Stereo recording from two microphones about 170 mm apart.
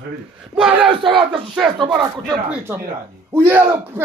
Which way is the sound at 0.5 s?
5° right (ahead or behind).